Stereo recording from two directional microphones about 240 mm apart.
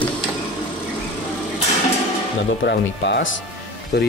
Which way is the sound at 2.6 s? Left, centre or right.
Left.